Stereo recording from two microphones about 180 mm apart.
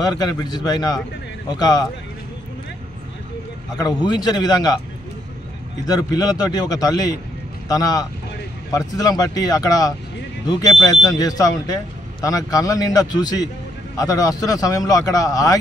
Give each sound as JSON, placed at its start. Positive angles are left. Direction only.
{"t": 0.0, "sound": "speech", "side_deg": 20}
{"t": 3.8, "sound": "speech", "side_deg": 20}
{"t": 5.9, "sound": "speech", "side_deg": 20}